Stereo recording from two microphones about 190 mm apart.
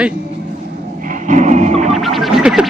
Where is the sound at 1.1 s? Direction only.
40° right (ahead or behind).